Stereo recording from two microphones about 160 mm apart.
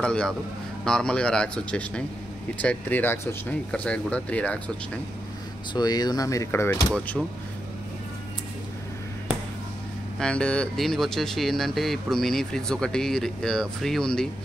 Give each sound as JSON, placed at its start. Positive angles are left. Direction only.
{"t": 0.0, "sound": "speech", "side_deg": 5}
{"t": 5.7, "sound": "speech", "side_deg": 25}
{"t": 7.2, "sound": "speech", "side_deg": -5}
{"t": 10.1, "sound": "speech", "side_deg": 5}